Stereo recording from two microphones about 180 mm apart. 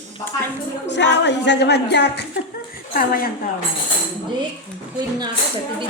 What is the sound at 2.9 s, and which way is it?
Speech, 55° left (ahead or behind).